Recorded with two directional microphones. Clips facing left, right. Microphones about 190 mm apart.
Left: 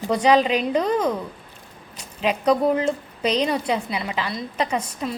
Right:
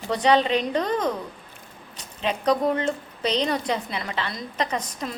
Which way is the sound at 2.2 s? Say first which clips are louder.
Left 3 dB; 10° left (ahead or behind).